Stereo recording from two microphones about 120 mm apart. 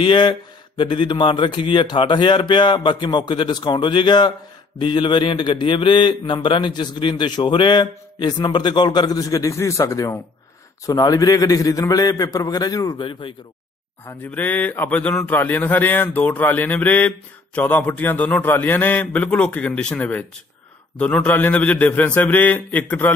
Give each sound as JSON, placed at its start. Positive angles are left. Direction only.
{"t": 0.0, "sound": "a man's voice", "side_deg": 40}
{"t": 14.0, "sound": "a man's voice", "side_deg": 15}